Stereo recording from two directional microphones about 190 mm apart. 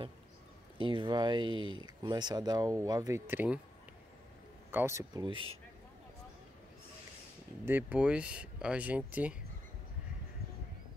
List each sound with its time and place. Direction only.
0.7 s speech: 25° right (ahead or behind); by 3.6 s 10° right (ahead or behind)
4.6 s speech: 10° right (ahead or behind)
7.6 s speech: 10° right (ahead or behind)